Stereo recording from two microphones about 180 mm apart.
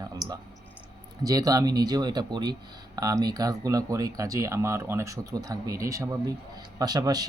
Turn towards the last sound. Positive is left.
turn(degrees=-20)  # may be behind; listen again after turning